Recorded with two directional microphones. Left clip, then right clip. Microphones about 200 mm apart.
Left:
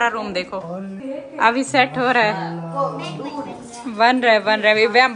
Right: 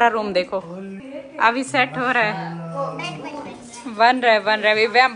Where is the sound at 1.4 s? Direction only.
15° left (ahead or behind).